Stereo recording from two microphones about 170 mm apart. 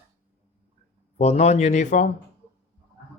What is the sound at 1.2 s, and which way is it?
Speech, 40° left (ahead or behind).